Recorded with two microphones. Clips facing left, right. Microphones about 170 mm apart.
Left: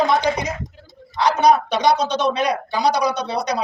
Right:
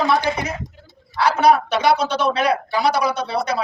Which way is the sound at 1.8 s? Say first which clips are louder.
Even; 20° left (ahead or behind).